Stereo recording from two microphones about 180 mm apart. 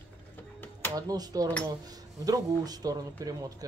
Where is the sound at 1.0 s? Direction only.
20° right (ahead or behind).